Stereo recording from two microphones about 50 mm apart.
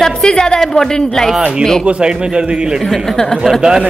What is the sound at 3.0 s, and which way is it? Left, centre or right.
Speech, centre.